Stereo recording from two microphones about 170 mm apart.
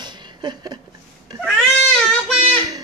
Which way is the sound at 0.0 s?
25° right (ahead or behind).